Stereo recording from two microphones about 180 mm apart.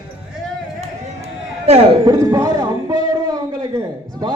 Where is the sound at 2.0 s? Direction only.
20° right (ahead or behind).